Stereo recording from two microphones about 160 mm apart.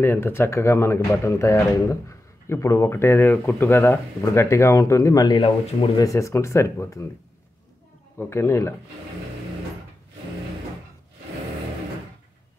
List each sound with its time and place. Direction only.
0.0 s speech: 15° left (ahead or behind); by 6.0 s 30° left (ahead or behind)
6.0 s speech: 20° left (ahead or behind)
8.2 s speech: 15° left (ahead or behind)